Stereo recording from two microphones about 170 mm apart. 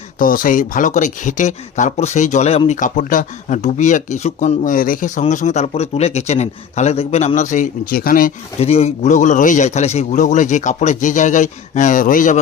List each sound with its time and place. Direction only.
0.2 s a man's voice: 55° left (ahead or behind)
8.5 s speech: 40° left (ahead or behind)